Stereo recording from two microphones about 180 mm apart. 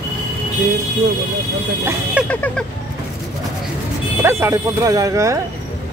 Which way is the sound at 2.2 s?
5° left (ahead or behind).